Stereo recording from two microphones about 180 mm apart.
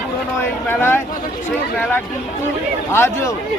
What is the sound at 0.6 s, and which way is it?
Speech, 10° left (ahead or behind).